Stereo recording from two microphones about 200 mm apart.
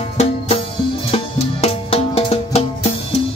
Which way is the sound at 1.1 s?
30° left (ahead or behind).